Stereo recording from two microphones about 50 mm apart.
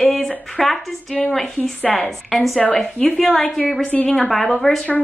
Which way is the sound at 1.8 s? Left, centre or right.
Left.